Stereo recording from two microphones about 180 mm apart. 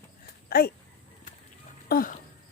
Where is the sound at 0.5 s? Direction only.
60° left (ahead or behind).